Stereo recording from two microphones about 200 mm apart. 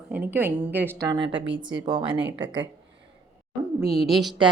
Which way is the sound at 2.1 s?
65° right (ahead or behind).